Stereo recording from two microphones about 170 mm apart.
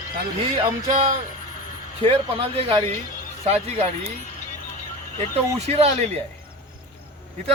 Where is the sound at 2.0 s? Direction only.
35° right (ahead or behind).